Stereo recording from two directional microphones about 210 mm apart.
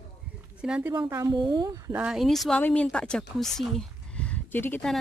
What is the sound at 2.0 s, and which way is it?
Speech, centre (ahead or behind).